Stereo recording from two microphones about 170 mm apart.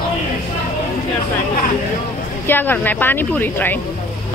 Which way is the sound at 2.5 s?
10° left (ahead or behind).